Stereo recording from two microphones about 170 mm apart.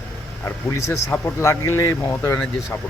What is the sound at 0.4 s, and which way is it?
Speech, 15° left (ahead or behind).